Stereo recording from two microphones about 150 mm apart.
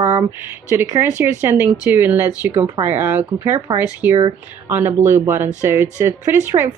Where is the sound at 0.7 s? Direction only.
15° right (ahead or behind).